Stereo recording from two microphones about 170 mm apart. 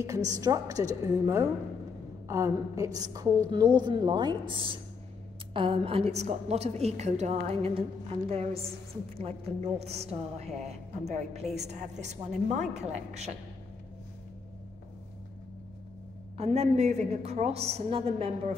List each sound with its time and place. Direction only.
0.0 s a woman's voice: 20° right (ahead or behind); by 13.3 s 40° right (ahead or behind)
16.3 s a woman's voice: 40° right (ahead or behind)